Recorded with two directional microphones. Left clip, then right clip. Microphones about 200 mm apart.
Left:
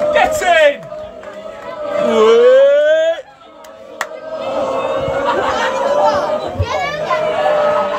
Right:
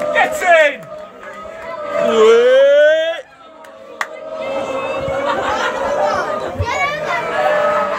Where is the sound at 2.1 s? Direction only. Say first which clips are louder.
Even; 15° left (ahead or behind).